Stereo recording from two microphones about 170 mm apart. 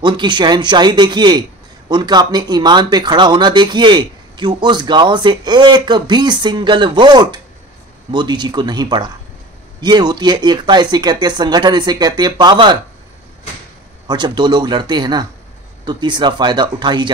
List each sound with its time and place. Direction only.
0.0 s speech: 25° right (ahead or behind)
14.0 s speech: 25° right (ahead or behind)